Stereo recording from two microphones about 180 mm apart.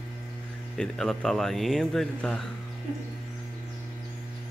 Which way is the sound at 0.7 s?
5° left (ahead or behind).